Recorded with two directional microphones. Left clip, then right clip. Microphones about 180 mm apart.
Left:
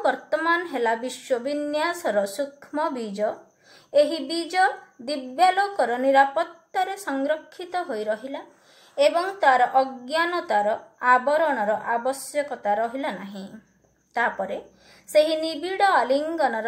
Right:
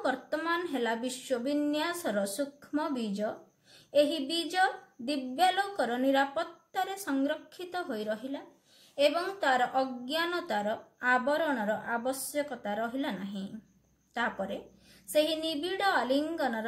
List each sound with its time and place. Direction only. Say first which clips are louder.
0.0 s speech: left 9 dB; 15° right (ahead or behind)